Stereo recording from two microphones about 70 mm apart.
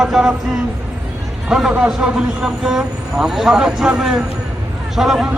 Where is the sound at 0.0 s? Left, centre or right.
Centre.